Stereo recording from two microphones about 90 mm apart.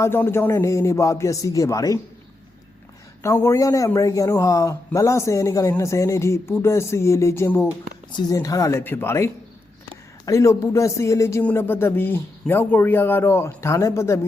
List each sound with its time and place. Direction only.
0.0 s speech: 25° left (ahead or behind)
3.2 s speech: 30° left (ahead or behind)
8.1 s speech: 40° left (ahead or behind)
8.8 s speech: 25° left (ahead or behind)
11.4 s speech: 25° left (ahead or behind)